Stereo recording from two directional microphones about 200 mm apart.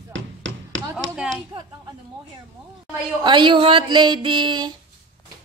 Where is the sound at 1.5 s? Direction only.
20° right (ahead or behind).